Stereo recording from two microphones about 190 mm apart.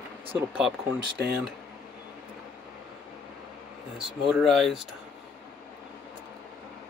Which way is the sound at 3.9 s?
Centre (ahead or behind).